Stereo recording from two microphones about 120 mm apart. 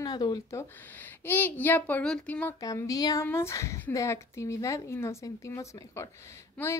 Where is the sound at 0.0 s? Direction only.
35° left (ahead or behind).